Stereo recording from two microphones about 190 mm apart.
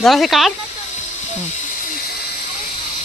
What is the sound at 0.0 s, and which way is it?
Speech, centre (ahead or behind).